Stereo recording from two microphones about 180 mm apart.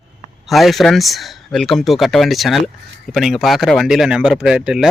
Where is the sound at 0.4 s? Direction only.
Centre (ahead or behind).